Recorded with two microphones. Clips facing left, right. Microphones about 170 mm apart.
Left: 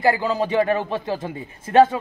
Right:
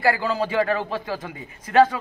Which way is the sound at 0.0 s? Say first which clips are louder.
Left 2 dB; 20° left (ahead or behind).